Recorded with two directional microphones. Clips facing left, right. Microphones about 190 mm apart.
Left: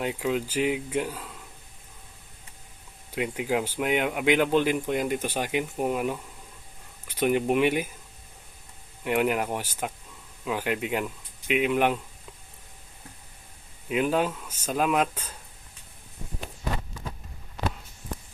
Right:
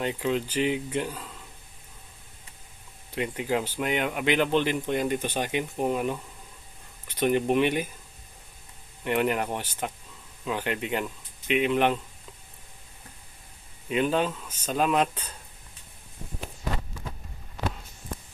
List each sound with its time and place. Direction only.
0.0 s speech: 5° left (ahead or behind)
3.2 s speech: 10° left (ahead or behind)
9.0 s speech: 5° left (ahead or behind)
13.8 s speech: 5° left (ahead or behind)